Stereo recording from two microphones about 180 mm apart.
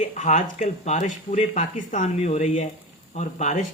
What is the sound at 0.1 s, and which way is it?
Speech, 40° left (ahead or behind).